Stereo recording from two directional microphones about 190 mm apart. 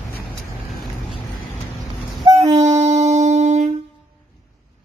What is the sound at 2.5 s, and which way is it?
Music, 35° right (ahead or behind).